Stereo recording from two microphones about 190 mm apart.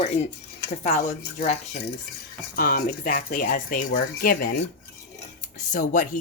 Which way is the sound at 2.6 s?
50° left (ahead or behind).